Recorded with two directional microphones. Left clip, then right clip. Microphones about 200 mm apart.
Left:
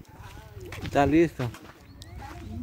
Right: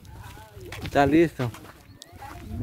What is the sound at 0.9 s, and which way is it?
Speech, centre (ahead or behind).